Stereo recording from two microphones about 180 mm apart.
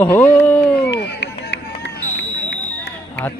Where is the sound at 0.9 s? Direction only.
70° left (ahead or behind).